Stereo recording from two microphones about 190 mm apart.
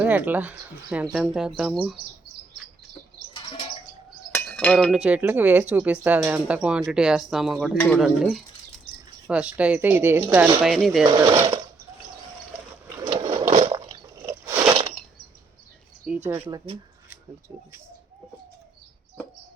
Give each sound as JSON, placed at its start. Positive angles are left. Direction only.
{"t": 0.0, "sound": "speech", "side_deg": -10}
{"t": 3.3, "sound": "bird", "side_deg": 30}
{"t": 4.4, "sound": "chink", "side_deg": 5}
{"t": 4.9, "sound": "speech", "side_deg": -5}
{"t": 10.6, "sound": "speech", "side_deg": 0}
{"t": 11.0, "sound": "speech", "side_deg": -20}
{"t": 13.5, "sound": "a sound", "side_deg": -35}
{"t": 13.7, "sound": "squish", "side_deg": -20}
{"t": 16.3, "sound": "speech", "side_deg": -10}